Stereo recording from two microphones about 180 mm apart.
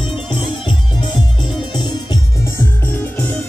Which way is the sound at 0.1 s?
30° left (ahead or behind).